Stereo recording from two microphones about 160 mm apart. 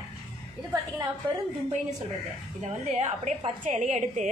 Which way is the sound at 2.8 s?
45° right (ahead or behind).